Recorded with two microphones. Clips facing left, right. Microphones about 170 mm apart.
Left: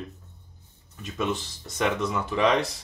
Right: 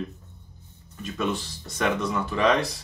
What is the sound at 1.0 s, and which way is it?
Speech, 20° left (ahead or behind).